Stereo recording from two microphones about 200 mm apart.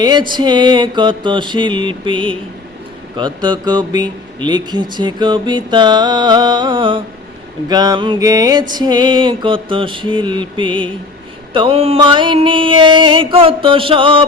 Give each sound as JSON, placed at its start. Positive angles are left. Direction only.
{"t": 0.0, "sound": "speech", "side_deg": -20}